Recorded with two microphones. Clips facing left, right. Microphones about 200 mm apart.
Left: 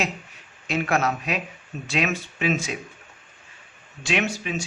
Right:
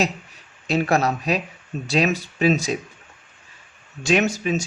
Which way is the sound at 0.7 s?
35° right (ahead or behind).